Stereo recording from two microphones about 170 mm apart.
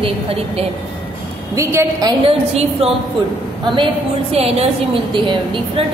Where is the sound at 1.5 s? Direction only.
15° right (ahead or behind).